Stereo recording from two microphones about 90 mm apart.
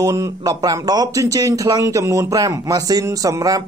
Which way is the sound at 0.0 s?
40° right (ahead or behind).